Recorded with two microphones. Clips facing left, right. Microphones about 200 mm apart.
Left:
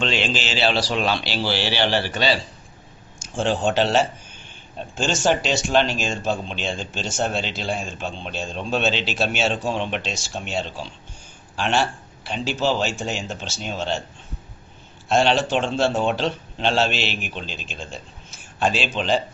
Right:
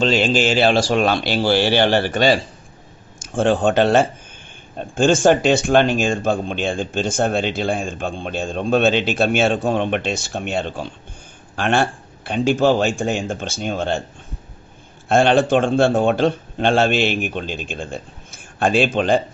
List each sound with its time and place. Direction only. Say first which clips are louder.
0.0 s speech: right 7 dB; 45° right (ahead or behind)
15.0 s speech: right 5 dB; 55° right (ahead or behind)